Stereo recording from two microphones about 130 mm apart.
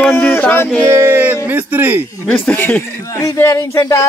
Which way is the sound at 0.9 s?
20° right (ahead or behind).